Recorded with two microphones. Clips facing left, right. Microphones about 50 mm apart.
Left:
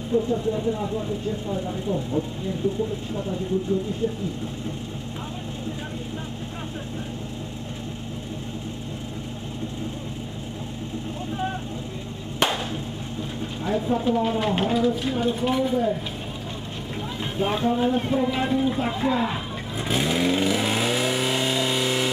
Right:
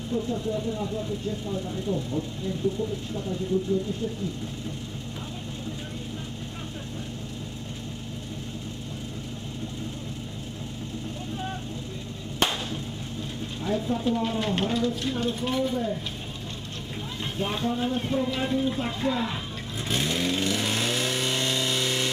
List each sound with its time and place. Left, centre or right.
0.1 s speech: centre
13.7 s speech: centre
17.2 s speech: centre
19.8 s vehicle: centre